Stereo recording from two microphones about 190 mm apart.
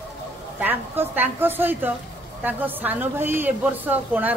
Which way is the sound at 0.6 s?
10° right (ahead or behind).